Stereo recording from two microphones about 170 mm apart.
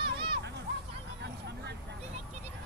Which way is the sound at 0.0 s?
30° right (ahead or behind).